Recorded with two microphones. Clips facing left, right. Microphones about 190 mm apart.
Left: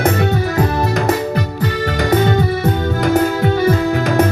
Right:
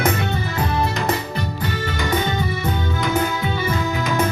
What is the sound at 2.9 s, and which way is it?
Music, 50° left (ahead or behind).